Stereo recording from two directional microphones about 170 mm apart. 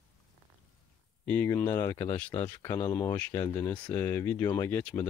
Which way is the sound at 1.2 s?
10° left (ahead or behind).